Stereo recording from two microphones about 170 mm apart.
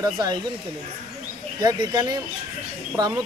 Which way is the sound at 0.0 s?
25° right (ahead or behind).